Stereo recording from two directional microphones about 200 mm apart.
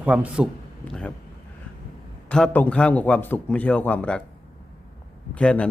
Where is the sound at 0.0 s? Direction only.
5° right (ahead or behind).